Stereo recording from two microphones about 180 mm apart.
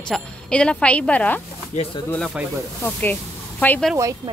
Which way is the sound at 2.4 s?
5° right (ahead or behind).